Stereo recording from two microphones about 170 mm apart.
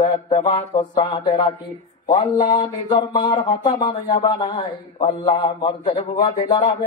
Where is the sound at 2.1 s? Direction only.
35° left (ahead or behind).